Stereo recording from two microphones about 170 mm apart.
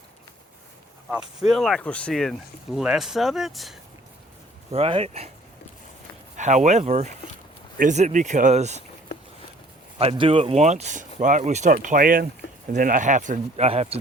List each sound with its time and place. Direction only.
1.1 s speech: 5° right (ahead or behind)
4.7 s speech: 35° right (ahead or behind)
6.3 s speech: 45° right (ahead or behind)
10.0 s speech: 35° right (ahead or behind)